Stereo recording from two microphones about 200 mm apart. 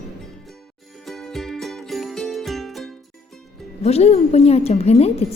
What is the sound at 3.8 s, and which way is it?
Speech, 30° left (ahead or behind).